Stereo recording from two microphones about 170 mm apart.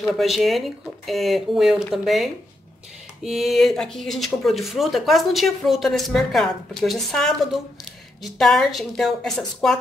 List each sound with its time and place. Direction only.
0.1 s speech: centre (ahead or behind)
3.3 s speech: centre (ahead or behind)